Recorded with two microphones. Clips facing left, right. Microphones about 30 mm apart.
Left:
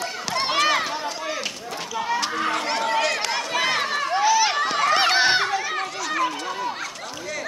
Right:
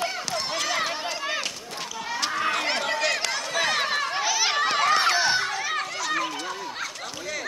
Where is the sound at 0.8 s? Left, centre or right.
Centre.